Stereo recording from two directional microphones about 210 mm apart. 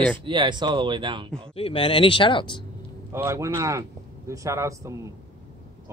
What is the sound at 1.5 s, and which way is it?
Speech, 25° left (ahead or behind).